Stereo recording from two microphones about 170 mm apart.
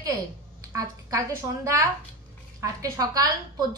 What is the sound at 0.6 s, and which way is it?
A woman's voice, 20° right (ahead or behind).